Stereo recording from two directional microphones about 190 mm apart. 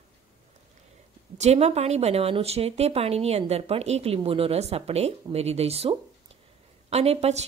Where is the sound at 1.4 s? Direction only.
35° right (ahead or behind).